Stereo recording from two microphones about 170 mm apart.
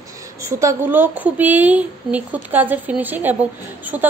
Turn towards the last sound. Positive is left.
turn(degrees=-10)  # may be behind; listen again after turning